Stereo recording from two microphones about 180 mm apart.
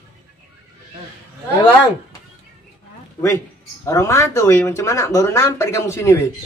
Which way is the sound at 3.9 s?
15° left (ahead or behind).